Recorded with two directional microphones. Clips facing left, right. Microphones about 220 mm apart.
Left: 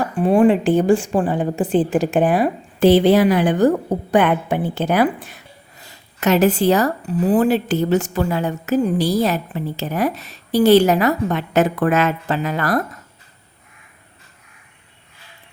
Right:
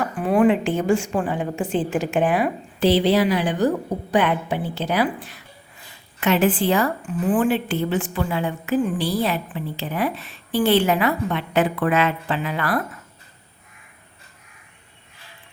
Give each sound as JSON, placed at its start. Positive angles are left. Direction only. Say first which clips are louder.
{"t": 0.2, "sound": "a woman's voice", "louder": "left 4 dB", "side_deg": 30}
{"t": 2.8, "sound": "a woman's voice", "louder": "left 5 dB", "side_deg": 50}
{"t": 6.1, "sound": "a woman's voice", "louder": "left 4 dB", "side_deg": 40}